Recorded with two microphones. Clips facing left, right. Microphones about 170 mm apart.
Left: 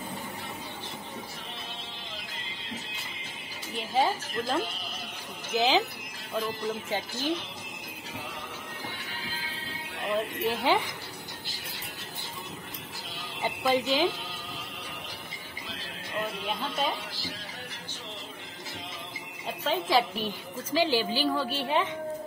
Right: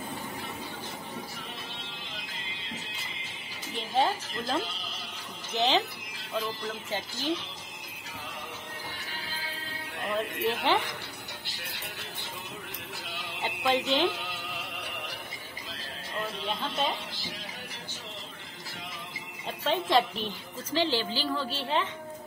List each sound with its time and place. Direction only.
3.9 s a woman's voice: 5° left (ahead or behind)
10.0 s speech: centre (ahead or behind)
11.4 s a sound: 65° right (ahead or behind)
13.4 s speech: 5° left (ahead or behind)
14.1 s a sound: 70° right (ahead or behind)
19.4 s a woman's voice: centre (ahead or behind)